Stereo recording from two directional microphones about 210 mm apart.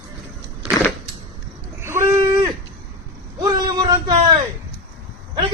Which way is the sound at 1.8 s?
10° right (ahead or behind).